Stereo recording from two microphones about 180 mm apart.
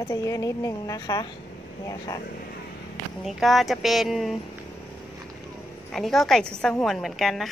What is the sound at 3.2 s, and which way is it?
A woman's voice, centre (ahead or behind).